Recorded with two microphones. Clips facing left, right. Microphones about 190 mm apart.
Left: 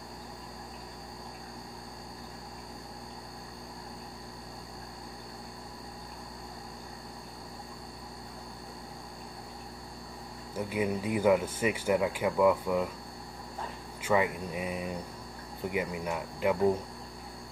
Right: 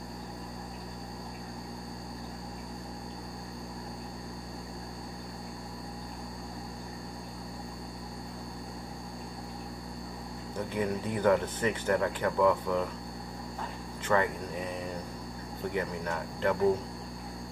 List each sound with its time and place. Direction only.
10.7 s speech: 10° left (ahead or behind)
14.0 s speech: 10° left (ahead or behind)